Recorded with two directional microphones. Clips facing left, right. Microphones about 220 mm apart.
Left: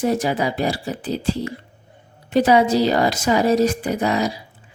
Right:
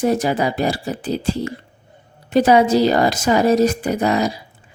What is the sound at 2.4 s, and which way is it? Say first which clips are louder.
A woman's voice: right 2 dB; 45° right (ahead or behind).